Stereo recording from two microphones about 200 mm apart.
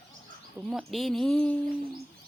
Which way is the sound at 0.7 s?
Centre (ahead or behind).